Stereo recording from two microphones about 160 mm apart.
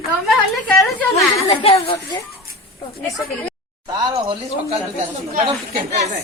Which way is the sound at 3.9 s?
30° right (ahead or behind).